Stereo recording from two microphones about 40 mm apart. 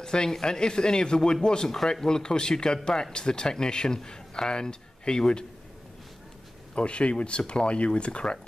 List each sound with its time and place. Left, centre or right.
0.0 s speech: centre
6.7 s speech: left